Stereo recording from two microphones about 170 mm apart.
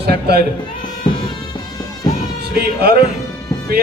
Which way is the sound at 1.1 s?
25° left (ahead or behind).